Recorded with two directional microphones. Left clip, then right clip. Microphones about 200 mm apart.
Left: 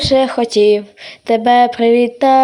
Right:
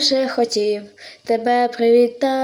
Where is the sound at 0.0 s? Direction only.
30° left (ahead or behind).